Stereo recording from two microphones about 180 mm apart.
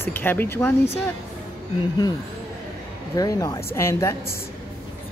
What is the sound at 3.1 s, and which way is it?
Speech, 20° left (ahead or behind).